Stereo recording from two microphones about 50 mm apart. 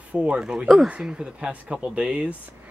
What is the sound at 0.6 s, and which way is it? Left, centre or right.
Speech, centre.